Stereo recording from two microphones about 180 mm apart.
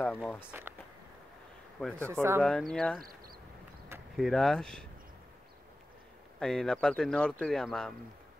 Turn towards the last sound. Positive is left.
turn(degrees=5)  # may be behind; listen again after turning